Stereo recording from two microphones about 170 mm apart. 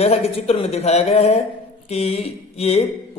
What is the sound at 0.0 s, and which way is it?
Speech, 35° left (ahead or behind).